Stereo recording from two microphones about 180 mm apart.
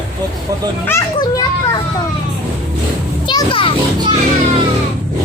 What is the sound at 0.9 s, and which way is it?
Children playing, 20° left (ahead or behind).